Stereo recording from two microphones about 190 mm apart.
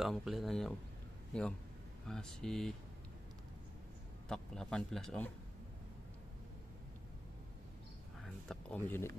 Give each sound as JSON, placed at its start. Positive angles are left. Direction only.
{"t": 0.0, "sound": "speech", "side_deg": 0}
{"t": 2.0, "sound": "speech", "side_deg": 5}
{"t": 4.3, "sound": "speech", "side_deg": 5}
{"t": 8.5, "sound": "speech", "side_deg": 10}